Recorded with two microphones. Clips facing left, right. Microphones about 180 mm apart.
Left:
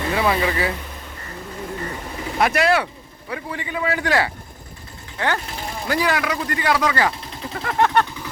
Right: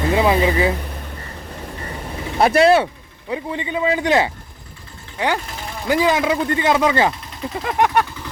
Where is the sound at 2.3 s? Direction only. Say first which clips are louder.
Right 5 dB; 30° right (ahead or behind); by 8.1 s 10° right (ahead or behind).